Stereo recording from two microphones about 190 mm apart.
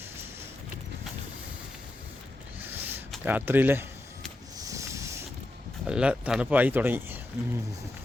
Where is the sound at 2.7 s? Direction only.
10° right (ahead or behind).